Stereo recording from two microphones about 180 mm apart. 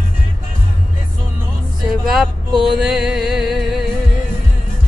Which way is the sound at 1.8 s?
Centre (ahead or behind).